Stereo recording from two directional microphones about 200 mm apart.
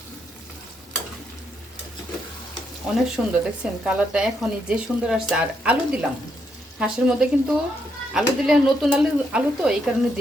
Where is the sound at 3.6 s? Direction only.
5° right (ahead or behind).